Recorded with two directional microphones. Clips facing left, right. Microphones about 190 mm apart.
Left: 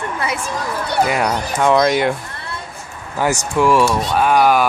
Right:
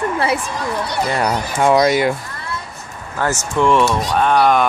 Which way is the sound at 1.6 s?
5° right (ahead or behind).